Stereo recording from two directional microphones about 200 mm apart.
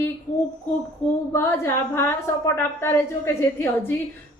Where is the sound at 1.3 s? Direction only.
10° left (ahead or behind).